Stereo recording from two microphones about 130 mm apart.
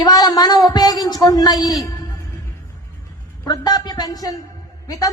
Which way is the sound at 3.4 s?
30° left (ahead or behind).